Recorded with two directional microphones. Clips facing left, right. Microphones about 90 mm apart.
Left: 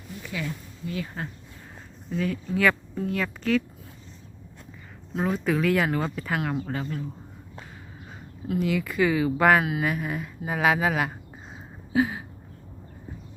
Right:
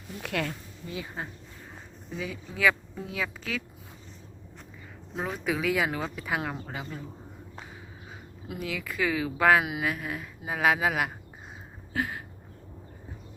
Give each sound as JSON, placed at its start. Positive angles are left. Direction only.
{"t": 0.2, "sound": "speech", "side_deg": -65}
{"t": 0.9, "sound": "speech", "side_deg": -15}
{"t": 2.0, "sound": "a woman's voice", "side_deg": -5}
{"t": 5.2, "sound": "a woman's voice", "side_deg": 0}
{"t": 8.5, "sound": "a woman's voice", "side_deg": 0}